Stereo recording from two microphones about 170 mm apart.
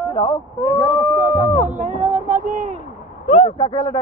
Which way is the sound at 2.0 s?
50° right (ahead or behind).